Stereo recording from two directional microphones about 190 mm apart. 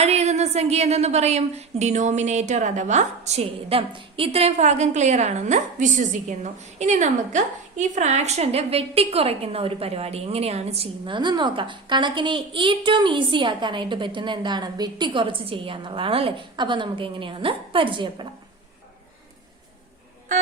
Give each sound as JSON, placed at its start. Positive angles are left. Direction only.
{"t": 0.0, "sound": "a woman's voice", "side_deg": -35}